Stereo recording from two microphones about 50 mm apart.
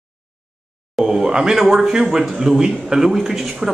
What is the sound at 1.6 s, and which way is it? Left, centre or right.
A man's voice, centre.